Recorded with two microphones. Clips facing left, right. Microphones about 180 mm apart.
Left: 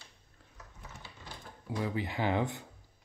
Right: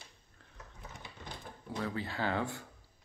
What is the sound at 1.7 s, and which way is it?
Speech, 15° left (ahead or behind).